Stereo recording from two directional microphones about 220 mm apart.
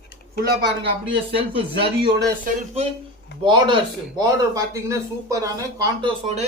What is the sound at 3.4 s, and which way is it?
Speech, 20° right (ahead or behind).